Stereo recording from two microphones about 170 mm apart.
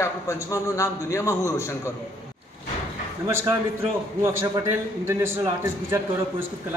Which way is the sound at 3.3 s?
15° right (ahead or behind).